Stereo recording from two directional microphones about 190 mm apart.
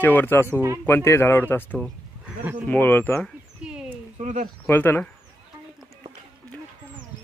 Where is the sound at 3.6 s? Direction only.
5° right (ahead or behind).